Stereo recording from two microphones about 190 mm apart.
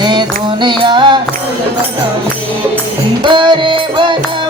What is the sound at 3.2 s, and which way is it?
Music, 25° right (ahead or behind).